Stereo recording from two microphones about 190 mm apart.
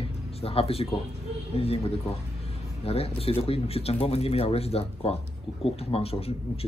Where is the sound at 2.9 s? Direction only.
30° left (ahead or behind).